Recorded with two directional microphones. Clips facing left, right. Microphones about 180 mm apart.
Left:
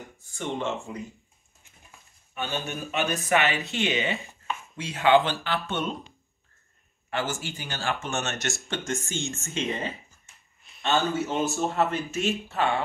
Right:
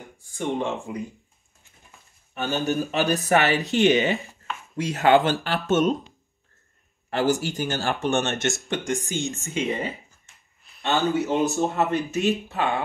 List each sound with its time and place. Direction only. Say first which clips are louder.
0.4 s speech: right 4 dB; 15° right (ahead or behind)
2.3 s speech: right 7 dB; 40° right (ahead or behind)
7.1 s speech: right 8 dB; 40° right (ahead or behind)
8.1 s speech: right 7 dB; 30° right (ahead or behind); by 12.8 s 15° right (ahead or behind)